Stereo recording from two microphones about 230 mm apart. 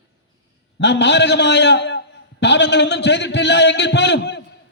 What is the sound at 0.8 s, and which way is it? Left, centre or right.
A man's voice, left.